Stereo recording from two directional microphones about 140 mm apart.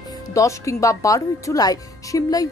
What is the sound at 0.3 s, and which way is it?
A woman's voice, 20° left (ahead or behind).